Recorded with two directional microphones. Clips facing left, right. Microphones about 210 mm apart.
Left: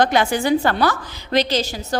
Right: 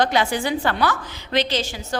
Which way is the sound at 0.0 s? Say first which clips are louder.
Left 3 dB; 50° left (ahead or behind).